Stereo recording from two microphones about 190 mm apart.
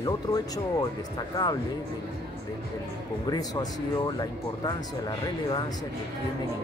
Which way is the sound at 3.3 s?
20° left (ahead or behind).